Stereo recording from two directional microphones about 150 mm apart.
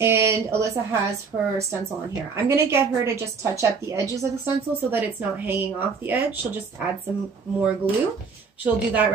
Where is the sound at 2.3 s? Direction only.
15° right (ahead or behind).